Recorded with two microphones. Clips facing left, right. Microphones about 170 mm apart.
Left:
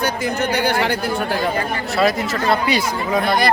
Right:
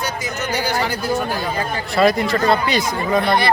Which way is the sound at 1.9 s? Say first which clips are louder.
Right 3 dB; centre (ahead or behind).